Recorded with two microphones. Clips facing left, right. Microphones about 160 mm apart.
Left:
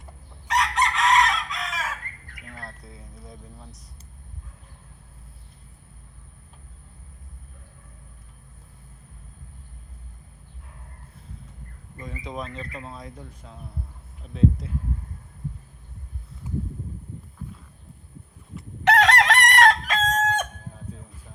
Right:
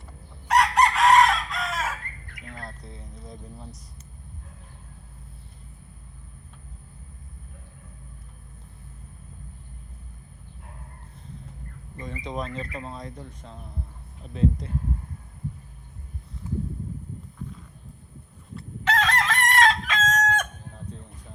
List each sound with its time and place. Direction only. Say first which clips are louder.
0.4 s chicken: right 4 dB; 55° right (ahead or behind)
2.4 s music: right 1 dB; 30° right (ahead or behind)
2.6 s vehicle: right 2 dB; 5° left (ahead or behind)
11.9 s speech: right 2 dB; 5° left (ahead or behind)
16.3 s a sound: right 4 dB; centre (ahead or behind)
18.9 s chicken: left 6 dB; 70° left (ahead or behind)
19.8 s chicken: left 1 dB; 35° left (ahead or behind)
20.7 s train: right 3 dB; 5° left (ahead or behind)